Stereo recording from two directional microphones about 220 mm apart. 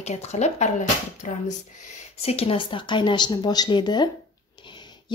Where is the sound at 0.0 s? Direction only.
30° left (ahead or behind).